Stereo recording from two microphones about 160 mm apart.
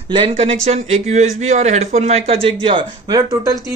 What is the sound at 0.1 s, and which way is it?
A man's voice, 35° right (ahead or behind).